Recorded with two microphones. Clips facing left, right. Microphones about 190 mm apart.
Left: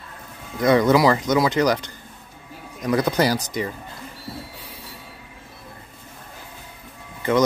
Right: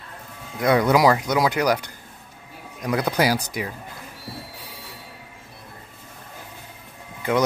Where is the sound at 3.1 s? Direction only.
10° right (ahead or behind).